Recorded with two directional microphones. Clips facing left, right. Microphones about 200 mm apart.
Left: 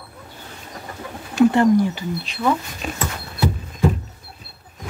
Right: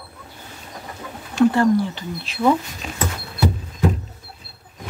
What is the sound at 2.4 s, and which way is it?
Speech, 10° right (ahead or behind).